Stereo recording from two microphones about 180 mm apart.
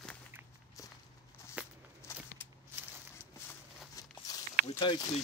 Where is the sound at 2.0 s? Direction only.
15° left (ahead or behind).